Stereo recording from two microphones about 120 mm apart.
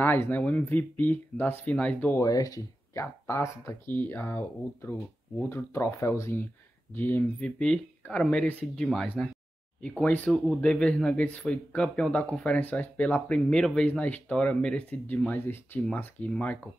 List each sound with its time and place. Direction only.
0.0 s speech: 15° left (ahead or behind)
2.1 s speech: 30° left (ahead or behind); by 16.5 s 10° left (ahead or behind)